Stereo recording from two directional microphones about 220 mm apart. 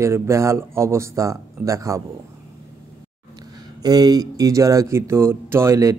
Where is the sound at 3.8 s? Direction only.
15° right (ahead or behind).